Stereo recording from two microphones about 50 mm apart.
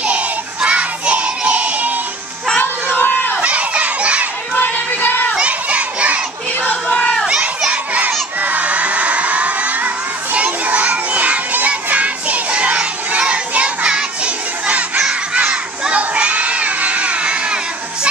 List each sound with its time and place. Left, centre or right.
0.0 s music: right
3.0 s crowd: left
3.3 s crowd: right
4.6 s music: left
5.4 s crowd: right
6.6 s a sound: left
7.0 s crowd: centre
7.2 s crowd: centre
15.9 s crowd: right